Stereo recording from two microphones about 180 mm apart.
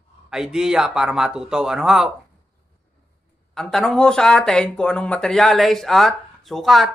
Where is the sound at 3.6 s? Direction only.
5° left (ahead or behind).